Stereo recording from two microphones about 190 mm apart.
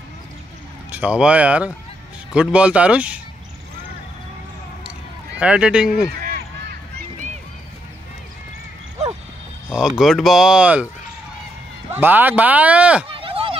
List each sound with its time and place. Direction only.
0.9 s speech: 5° right (ahead or behind)
5.4 s speech: 5° right (ahead or behind)
9.8 s speech: centre (ahead or behind)
11.9 s speech: 10° right (ahead or behind)
13.1 s a sound: 30° right (ahead or behind)